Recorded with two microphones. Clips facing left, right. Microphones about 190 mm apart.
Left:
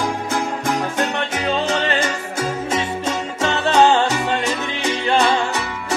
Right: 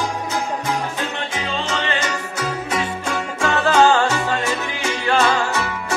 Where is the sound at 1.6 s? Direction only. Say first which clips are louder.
Left 3 dB; 35° left (ahead or behind); by 5.4 s 15° left (ahead or behind).